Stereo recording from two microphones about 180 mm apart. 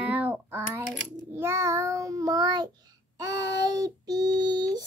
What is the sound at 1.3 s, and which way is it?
Child singing, 15° right (ahead or behind).